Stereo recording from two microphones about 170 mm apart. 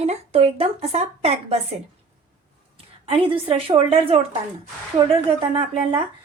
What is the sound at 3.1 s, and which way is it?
Speech, 35° right (ahead or behind).